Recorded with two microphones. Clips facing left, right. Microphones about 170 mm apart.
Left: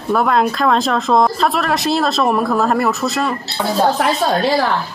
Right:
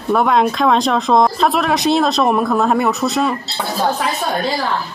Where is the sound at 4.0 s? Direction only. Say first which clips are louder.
Left 4 dB; 65° left (ahead or behind).